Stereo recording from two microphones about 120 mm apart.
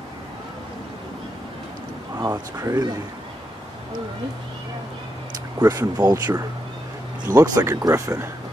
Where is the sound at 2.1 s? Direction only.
30° right (ahead or behind).